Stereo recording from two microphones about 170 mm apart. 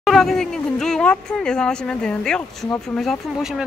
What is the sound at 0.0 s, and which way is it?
Speech, centre (ahead or behind).